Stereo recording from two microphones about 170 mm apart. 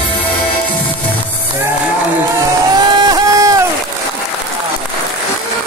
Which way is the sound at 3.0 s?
20° right (ahead or behind).